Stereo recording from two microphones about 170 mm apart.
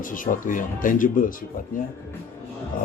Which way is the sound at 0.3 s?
50° left (ahead or behind).